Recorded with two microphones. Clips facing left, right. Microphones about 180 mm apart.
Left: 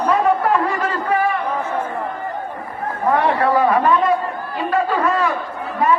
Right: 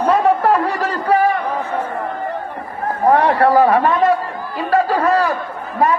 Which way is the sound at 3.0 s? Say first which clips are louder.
Right 4 dB; 40° right (ahead or behind).